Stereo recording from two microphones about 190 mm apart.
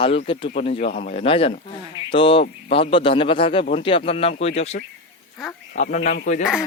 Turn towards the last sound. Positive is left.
turn(degrees=0)  # may be behind; listen again after turning